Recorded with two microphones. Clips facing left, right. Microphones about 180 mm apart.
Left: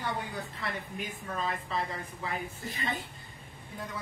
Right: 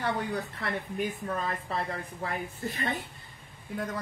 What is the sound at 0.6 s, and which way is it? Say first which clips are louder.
Speech: right 2 dB; 60° right (ahead or behind).